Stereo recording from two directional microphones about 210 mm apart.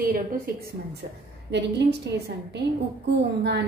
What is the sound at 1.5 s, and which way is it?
A woman's voice, 55° right (ahead or behind).